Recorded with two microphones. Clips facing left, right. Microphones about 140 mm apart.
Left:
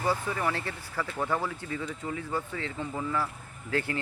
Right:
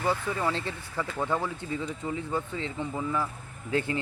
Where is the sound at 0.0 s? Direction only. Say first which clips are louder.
Right 1 dB; 20° right (ahead or behind).